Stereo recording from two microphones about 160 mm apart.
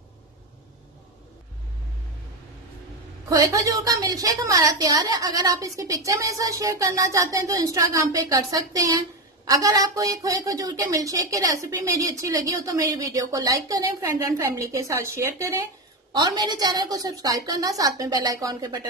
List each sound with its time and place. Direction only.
3.3 s a woman's voice: 20° right (ahead or behind)